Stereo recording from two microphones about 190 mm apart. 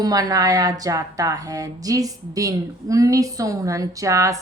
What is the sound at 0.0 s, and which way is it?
A woman's voice, 20° right (ahead or behind).